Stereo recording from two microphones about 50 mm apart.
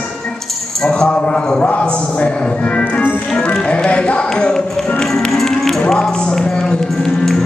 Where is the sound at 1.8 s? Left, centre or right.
Left.